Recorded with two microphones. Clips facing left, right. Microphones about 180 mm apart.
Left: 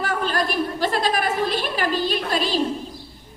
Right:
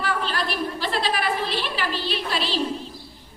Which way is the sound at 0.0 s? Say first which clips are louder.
Left 3 dB; 45° left (ahead or behind).